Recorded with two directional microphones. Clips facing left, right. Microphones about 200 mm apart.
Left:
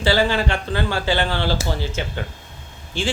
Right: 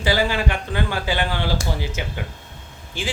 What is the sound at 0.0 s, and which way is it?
A man's voice, 15° right (ahead or behind).